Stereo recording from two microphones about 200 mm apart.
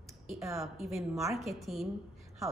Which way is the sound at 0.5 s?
Centre (ahead or behind).